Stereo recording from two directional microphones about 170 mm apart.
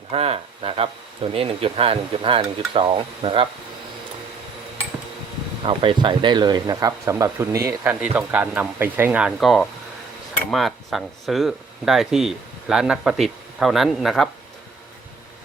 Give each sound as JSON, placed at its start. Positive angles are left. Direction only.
{"t": 0.1, "sound": "speech", "side_deg": -35}
{"t": 5.6, "sound": "speech", "side_deg": -30}